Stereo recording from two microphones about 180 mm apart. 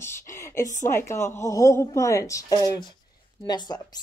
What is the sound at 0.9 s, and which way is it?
A woman's voice, 15° left (ahead or behind).